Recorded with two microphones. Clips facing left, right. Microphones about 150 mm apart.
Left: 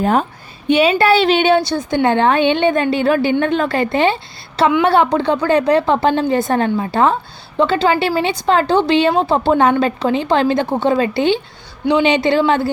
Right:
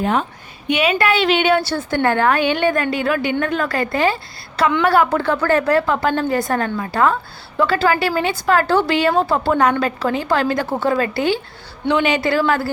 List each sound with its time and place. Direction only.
0.0 s a woman's voice: 40° left (ahead or behind); by 12.7 s 20° left (ahead or behind)